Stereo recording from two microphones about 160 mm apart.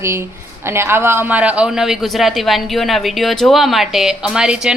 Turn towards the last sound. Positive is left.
turn(degrees=-5)  # may be behind; listen again after turning